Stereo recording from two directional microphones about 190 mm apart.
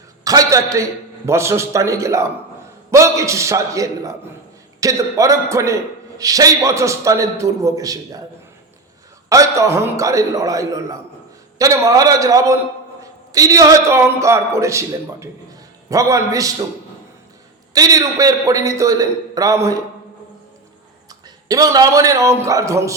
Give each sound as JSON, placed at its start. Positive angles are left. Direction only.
{"t": 0.3, "sound": "a man's voice", "side_deg": -15}
{"t": 9.3, "sound": "a man's voice", "side_deg": -15}
{"t": 17.7, "sound": "a man's voice", "side_deg": -15}
{"t": 21.1, "sound": "a man's voice", "side_deg": -20}